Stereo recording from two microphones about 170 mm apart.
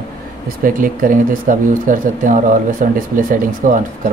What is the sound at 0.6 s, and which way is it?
Speech, 55° right (ahead or behind).